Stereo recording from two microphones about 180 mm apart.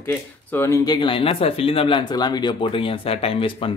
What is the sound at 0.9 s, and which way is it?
Speech, 30° left (ahead or behind).